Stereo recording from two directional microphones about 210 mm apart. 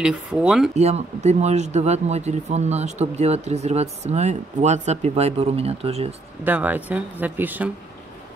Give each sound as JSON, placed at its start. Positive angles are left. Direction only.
{"t": 0.0, "sound": "speech", "side_deg": -5}
{"t": 0.7, "sound": "speech", "side_deg": -30}
{"t": 6.4, "sound": "speech", "side_deg": -10}